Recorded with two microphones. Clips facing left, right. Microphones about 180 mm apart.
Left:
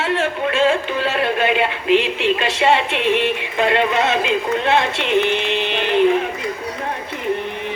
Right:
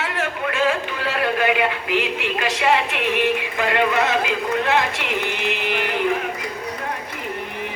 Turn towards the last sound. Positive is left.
turn(degrees=25)  # may be behind; listen again after turning